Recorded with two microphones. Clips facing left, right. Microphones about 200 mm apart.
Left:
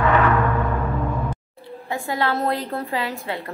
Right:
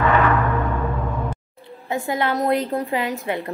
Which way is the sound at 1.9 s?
20° right (ahead or behind).